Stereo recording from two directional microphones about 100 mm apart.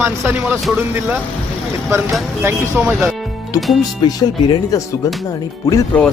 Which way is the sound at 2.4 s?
20° right (ahead or behind).